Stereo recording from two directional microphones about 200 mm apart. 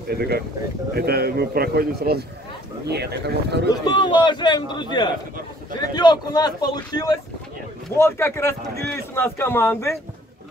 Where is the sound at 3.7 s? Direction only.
20° left (ahead or behind).